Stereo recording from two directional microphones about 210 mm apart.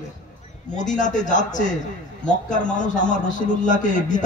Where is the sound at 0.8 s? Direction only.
35° left (ahead or behind).